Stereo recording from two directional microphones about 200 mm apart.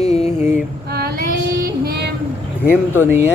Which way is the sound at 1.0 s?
50° right (ahead or behind).